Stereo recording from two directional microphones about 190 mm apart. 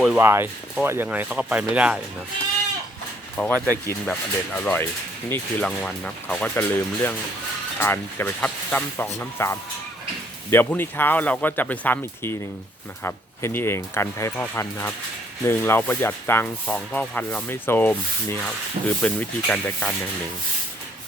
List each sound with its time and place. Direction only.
0.0 s speech: 10° right (ahead or behind)
3.3 s speech: 10° left (ahead or behind)